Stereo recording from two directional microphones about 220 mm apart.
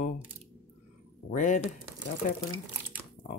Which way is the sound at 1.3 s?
35° left (ahead or behind).